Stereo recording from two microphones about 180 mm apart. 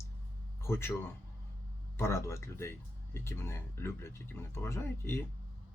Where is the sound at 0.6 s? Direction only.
15° left (ahead or behind).